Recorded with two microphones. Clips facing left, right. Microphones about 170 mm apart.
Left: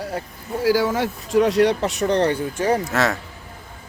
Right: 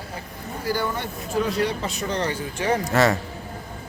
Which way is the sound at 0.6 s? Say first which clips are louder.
Left 8 dB; 90° left.